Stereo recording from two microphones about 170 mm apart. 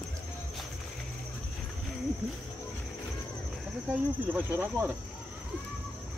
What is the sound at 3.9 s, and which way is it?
Cricket, 10° right (ahead or behind).